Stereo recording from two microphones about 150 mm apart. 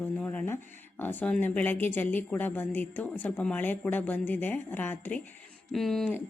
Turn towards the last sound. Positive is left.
turn(degrees=0)  # may be behind; listen again after turning